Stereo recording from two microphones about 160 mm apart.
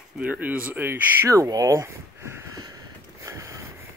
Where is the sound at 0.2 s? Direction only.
10° right (ahead or behind).